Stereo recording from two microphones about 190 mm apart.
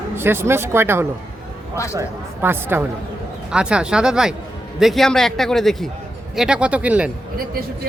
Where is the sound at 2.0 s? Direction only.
10° right (ahead or behind).